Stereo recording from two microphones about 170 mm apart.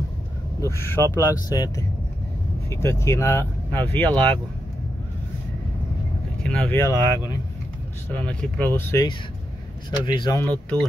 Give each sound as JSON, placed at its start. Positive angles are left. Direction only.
{"t": 0.6, "sound": "speech", "side_deg": 15}
{"t": 1.0, "sound": "speech", "side_deg": -15}
{"t": 1.5, "sound": "speech", "side_deg": 20}
{"t": 6.4, "sound": "speech", "side_deg": 5}
{"t": 6.8, "sound": "speech", "side_deg": 20}
{"t": 8.1, "sound": "speech", "side_deg": 5}
{"t": 9.8, "sound": "speech", "side_deg": 25}
{"t": 10.5, "sound": "speech", "side_deg": 5}